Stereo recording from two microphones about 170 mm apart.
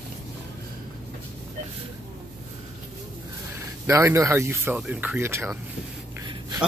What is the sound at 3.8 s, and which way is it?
Speech, 15° right (ahead or behind).